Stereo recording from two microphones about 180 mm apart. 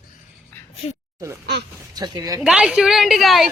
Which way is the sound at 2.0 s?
20° right (ahead or behind).